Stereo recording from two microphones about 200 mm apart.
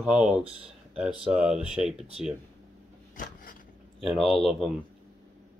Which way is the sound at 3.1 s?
40° left (ahead or behind).